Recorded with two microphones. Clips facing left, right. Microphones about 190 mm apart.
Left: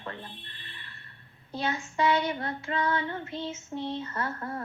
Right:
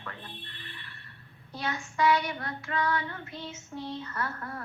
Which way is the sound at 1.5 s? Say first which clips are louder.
Left 3 dB; 25° left (ahead or behind).